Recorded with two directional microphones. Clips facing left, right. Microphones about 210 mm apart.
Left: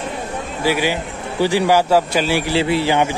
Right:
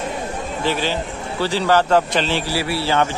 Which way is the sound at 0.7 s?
10° left (ahead or behind).